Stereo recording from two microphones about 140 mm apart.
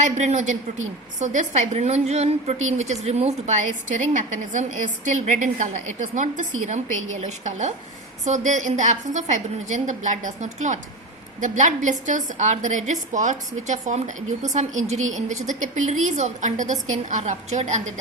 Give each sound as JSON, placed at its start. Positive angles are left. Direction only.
{"t": 0.0, "sound": "a woman's voice", "side_deg": -60}